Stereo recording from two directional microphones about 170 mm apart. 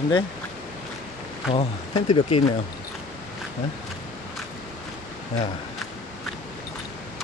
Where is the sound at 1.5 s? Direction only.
30° left (ahead or behind).